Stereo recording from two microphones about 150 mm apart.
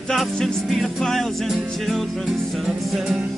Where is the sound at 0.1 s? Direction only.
Centre (ahead or behind).